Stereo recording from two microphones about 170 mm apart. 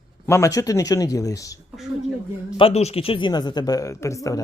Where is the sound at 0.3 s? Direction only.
15° left (ahead or behind).